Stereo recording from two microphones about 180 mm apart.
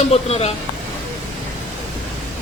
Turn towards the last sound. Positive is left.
turn(degrees=35)  # may be behind; listen again after turning